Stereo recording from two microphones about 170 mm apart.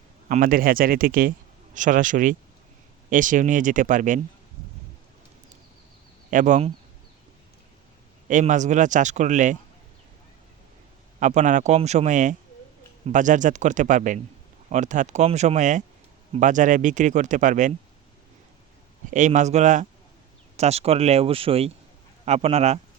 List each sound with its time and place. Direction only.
0.3 s speech: 50° right (ahead or behind)
6.3 s speech: 45° right (ahead or behind)
8.3 s speech: 45° right (ahead or behind)
11.2 s speech: 45° right (ahead or behind)
19.1 s speech: 45° right (ahead or behind)